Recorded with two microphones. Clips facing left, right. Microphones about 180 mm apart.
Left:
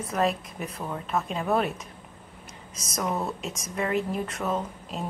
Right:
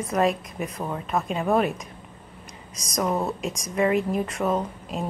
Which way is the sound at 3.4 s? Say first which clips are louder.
Right 7 dB; centre (ahead or behind).